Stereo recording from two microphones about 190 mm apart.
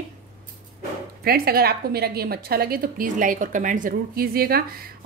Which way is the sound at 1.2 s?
55° right (ahead or behind).